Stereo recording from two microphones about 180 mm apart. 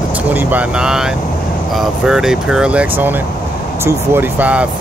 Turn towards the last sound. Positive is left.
turn(degrees=-10)  # may be behind; listen again after turning